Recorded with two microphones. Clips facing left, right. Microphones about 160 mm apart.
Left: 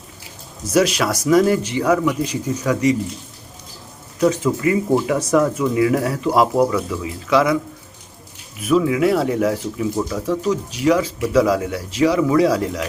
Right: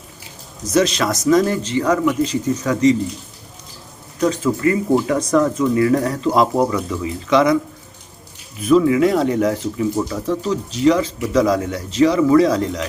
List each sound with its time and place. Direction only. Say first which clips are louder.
0.7 s speech: even; 10° left (ahead or behind)
4.2 s speech: even; 10° left (ahead or behind)
8.6 s speech: right 3 dB; 5° left (ahead or behind)